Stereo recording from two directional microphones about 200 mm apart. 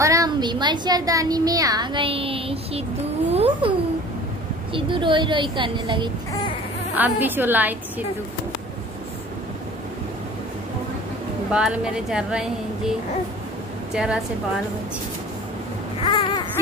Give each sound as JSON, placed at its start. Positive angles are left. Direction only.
{"t": 0.0, "sound": "speech", "side_deg": -15}
{"t": 4.7, "sound": "speech", "side_deg": -25}
{"t": 7.0, "sound": "a woman's voice", "side_deg": -10}
{"t": 11.5, "sound": "speech", "side_deg": -5}
{"t": 13.9, "sound": "speech", "side_deg": -5}
{"t": 16.0, "sound": "baby cry", "side_deg": 25}